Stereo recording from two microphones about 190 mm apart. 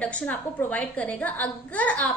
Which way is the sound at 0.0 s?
10° left (ahead or behind).